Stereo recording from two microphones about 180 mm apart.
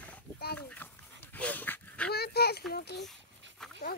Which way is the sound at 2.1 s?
60° left (ahead or behind).